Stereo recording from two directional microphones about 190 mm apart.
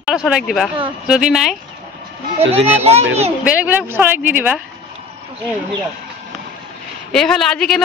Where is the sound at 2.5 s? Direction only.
30° right (ahead or behind).